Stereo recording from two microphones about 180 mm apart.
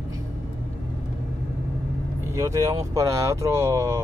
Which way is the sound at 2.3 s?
15° right (ahead or behind).